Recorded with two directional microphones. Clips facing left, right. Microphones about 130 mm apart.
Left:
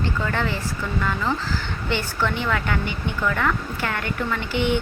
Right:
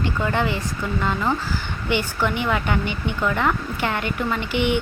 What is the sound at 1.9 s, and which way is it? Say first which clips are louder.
Speech: right 2 dB; 15° right (ahead or behind).